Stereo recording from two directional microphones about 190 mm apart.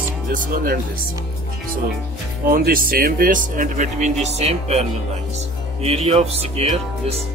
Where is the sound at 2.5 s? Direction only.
50° right (ahead or behind).